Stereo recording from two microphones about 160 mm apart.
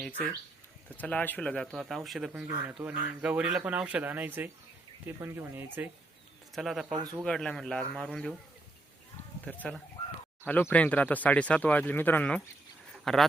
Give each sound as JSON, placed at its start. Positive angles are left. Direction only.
{"t": 0.9, "sound": "speech", "side_deg": 10}
{"t": 6.5, "sound": "speech", "side_deg": 0}
{"t": 6.8, "sound": "speech", "side_deg": -25}
{"t": 7.3, "sound": "speech", "side_deg": 5}
{"t": 9.5, "sound": "speech", "side_deg": 5}